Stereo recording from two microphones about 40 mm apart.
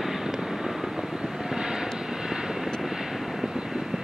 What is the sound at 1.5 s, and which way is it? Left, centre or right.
Vehicle, centre.